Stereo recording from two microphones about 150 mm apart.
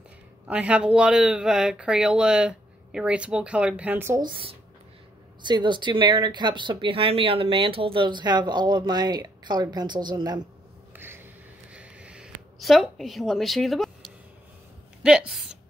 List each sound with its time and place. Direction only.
0.5 s speech: 10° right (ahead or behind)
4.3 s speech: 35° right (ahead or behind)
11.7 s a sound: 10° right (ahead or behind)
15.0 s speech: 5° right (ahead or behind)